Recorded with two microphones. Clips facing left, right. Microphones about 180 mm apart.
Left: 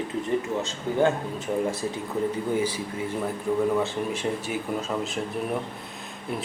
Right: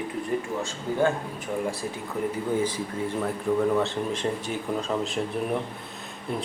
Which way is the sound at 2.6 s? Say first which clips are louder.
Even; 10° left (ahead or behind).